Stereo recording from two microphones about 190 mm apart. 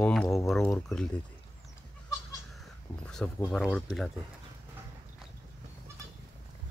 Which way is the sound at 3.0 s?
5° left (ahead or behind).